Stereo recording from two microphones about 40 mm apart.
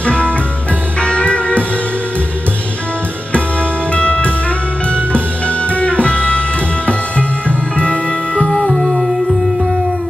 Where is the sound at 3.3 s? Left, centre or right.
Left.